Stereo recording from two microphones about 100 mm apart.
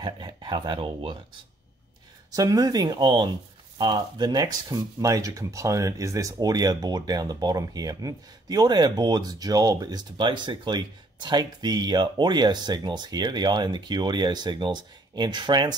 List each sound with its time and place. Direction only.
0.0 s speech: 45° right (ahead or behind)
2.3 s speech: 40° right (ahead or behind)